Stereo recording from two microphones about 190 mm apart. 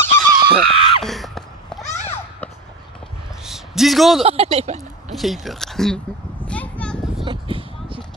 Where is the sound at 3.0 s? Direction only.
Centre (ahead or behind).